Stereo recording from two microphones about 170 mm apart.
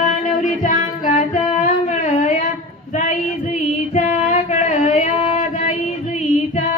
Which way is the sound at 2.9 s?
45° left (ahead or behind).